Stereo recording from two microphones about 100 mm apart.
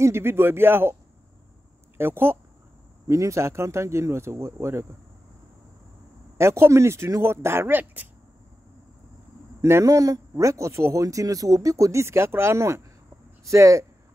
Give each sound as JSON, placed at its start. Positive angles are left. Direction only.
{"t": 0.0, "sound": "speech", "side_deg": -25}
{"t": 2.0, "sound": "speech", "side_deg": -20}
{"t": 6.3, "sound": "speech", "side_deg": -25}
{"t": 9.6, "sound": "speech", "side_deg": -30}